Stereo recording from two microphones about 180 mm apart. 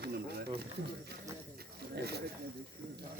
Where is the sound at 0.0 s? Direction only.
65° right (ahead or behind).